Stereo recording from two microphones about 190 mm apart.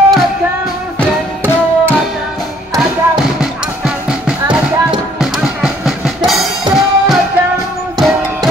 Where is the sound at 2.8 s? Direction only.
Centre (ahead or behind).